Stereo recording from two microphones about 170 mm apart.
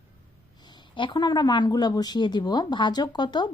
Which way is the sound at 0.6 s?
25° left (ahead or behind).